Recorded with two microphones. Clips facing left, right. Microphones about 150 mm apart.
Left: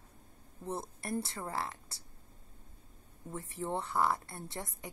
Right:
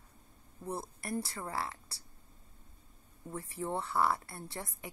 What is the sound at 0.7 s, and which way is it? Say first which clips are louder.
A woman's voice: left 1 dB; 25° left (ahead or behind).